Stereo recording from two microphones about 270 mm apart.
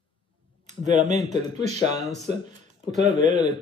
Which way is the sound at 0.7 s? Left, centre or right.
Right.